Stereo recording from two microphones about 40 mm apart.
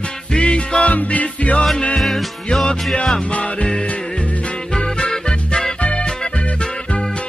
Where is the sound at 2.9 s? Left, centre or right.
Centre.